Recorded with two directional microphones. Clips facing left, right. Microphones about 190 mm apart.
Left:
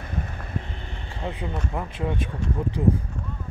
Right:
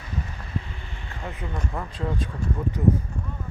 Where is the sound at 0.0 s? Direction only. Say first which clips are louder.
Left 2 dB; 55° left (ahead or behind).